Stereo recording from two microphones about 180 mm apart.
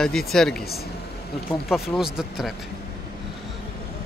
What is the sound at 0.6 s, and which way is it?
Speech, 60° left (ahead or behind).